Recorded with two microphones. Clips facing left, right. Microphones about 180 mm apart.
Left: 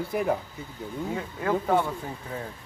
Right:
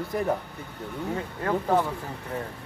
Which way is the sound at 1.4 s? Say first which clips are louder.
Even; centre (ahead or behind).